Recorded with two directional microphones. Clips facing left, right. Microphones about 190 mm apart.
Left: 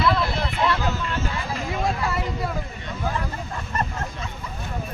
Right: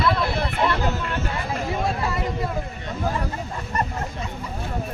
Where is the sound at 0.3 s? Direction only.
55° right (ahead or behind).